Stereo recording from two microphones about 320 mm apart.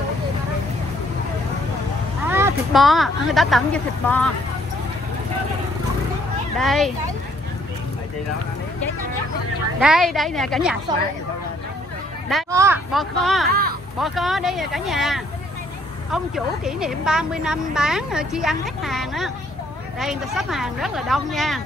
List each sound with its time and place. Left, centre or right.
2.2 s a woman's voice: centre
6.6 s a woman's voice: centre
9.8 s a woman's voice: centre
12.4 s a woman's voice: centre
13.5 s speech: right
13.9 s a woman's voice: centre